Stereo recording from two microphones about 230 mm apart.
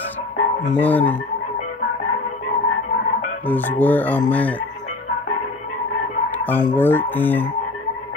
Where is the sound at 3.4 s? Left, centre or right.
Centre.